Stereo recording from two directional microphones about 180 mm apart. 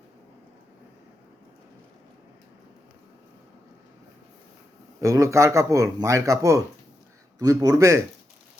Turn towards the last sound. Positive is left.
turn(degrees=-15)  # may be behind; listen again after turning